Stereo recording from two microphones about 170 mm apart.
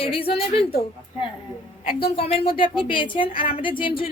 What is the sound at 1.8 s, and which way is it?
A woman's voice, 35° left (ahead or behind).